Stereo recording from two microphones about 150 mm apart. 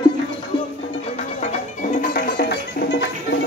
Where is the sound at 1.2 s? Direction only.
50° left (ahead or behind); by 2.8 s 90° left.